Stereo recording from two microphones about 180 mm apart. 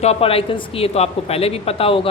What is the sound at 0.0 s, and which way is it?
Speech, 35° left (ahead or behind).